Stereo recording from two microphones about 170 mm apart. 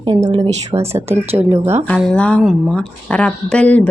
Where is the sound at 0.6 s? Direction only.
35° right (ahead or behind).